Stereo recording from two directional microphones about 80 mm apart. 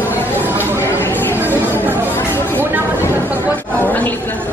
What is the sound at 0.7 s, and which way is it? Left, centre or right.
Chatter, left.